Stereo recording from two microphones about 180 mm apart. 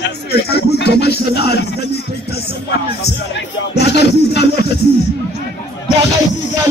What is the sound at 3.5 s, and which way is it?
Music, 70° left (ahead or behind).